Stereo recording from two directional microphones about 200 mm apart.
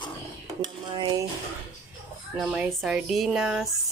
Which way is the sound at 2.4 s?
5° right (ahead or behind).